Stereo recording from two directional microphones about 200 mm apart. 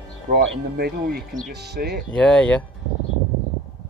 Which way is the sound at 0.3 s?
60° right (ahead or behind).